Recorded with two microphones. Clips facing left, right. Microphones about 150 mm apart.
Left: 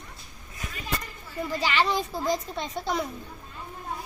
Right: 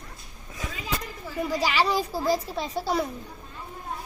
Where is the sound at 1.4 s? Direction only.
10° right (ahead or behind).